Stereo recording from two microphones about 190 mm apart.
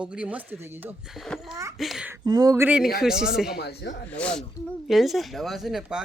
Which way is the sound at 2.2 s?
20° right (ahead or behind).